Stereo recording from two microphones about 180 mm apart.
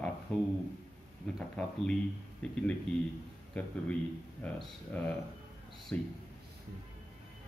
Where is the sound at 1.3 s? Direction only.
5° left (ahead or behind).